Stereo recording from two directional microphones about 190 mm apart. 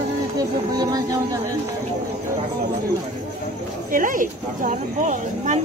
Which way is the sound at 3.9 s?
45° right (ahead or behind).